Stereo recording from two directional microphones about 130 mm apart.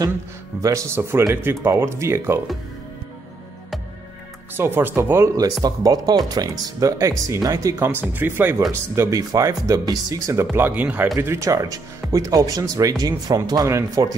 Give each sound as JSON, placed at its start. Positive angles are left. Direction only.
{"t": 0.6, "sound": "speech", "side_deg": -25}
{"t": 4.6, "sound": "speech", "side_deg": -15}